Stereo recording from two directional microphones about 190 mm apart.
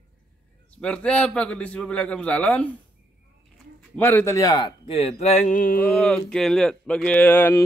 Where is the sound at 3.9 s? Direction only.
10° left (ahead or behind); by 5.4 s 35° left (ahead or behind).